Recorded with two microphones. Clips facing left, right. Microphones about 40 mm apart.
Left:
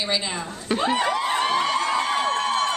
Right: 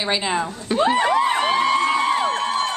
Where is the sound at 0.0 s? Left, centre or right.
Right.